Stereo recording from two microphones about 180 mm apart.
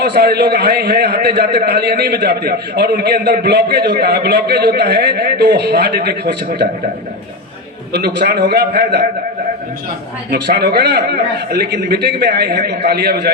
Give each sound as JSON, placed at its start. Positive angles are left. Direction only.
{"t": 0.0, "sound": "a man's voice", "side_deg": -65}
{"t": 7.9, "sound": "a man's voice", "side_deg": -65}
{"t": 10.3, "sound": "a man's voice", "side_deg": -65}